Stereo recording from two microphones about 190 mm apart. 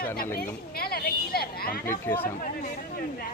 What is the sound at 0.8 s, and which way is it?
Speech, 55° left (ahead or behind).